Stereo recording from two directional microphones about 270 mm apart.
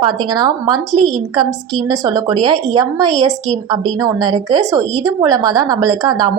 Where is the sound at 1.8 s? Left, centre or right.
Centre.